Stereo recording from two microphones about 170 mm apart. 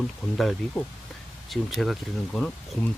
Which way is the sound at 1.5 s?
Centre (ahead or behind).